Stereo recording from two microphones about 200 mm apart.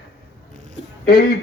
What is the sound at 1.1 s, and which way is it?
Speech, 50° left (ahead or behind).